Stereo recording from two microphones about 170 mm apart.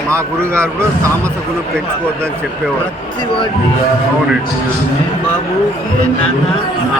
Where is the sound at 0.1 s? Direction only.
15° right (ahead or behind).